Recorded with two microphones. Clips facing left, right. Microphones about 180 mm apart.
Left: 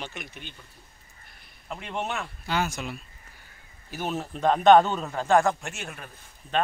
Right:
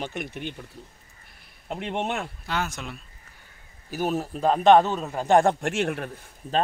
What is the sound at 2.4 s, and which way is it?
Speech, centre (ahead or behind).